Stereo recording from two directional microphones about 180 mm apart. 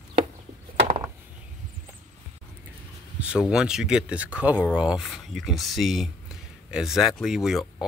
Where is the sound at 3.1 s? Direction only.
5° right (ahead or behind).